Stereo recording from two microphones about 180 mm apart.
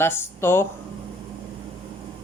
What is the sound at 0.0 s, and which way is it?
Speech, 15° left (ahead or behind).